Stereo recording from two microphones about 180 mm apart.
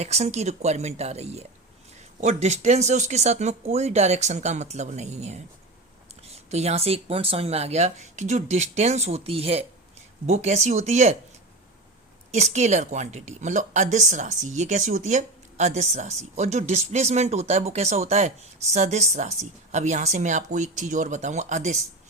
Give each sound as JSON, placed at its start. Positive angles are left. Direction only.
{"t": 0.0, "sound": "a woman's voice", "side_deg": -35}
{"t": 12.3, "sound": "a woman's voice", "side_deg": -40}